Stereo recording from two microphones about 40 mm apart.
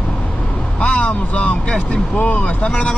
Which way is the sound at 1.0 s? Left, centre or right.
Left.